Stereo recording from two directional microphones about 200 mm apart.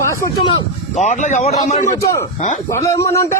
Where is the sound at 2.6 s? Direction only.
15° left (ahead or behind).